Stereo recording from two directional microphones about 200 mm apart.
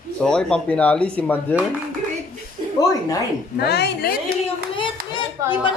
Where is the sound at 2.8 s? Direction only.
20° left (ahead or behind).